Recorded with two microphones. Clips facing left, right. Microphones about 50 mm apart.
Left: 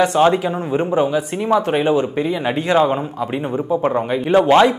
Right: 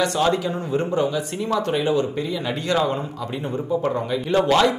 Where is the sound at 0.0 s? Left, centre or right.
Left.